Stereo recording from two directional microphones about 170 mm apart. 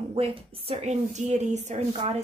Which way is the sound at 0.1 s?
35° right (ahead or behind).